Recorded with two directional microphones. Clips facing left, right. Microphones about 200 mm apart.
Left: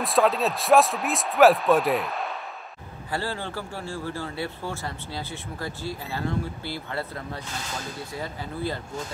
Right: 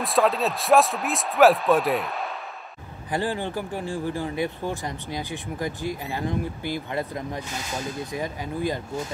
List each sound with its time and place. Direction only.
0.0 s speech: centre (ahead or behind)
3.1 s speech: 15° right (ahead or behind)